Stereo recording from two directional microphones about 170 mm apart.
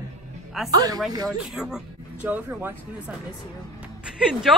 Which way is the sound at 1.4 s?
5° right (ahead or behind).